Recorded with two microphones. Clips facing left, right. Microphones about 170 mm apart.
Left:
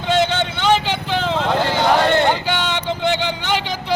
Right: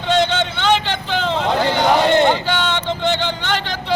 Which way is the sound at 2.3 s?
10° left (ahead or behind).